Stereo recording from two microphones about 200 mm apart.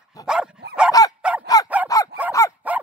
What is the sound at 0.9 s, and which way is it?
Dog, 15° left (ahead or behind).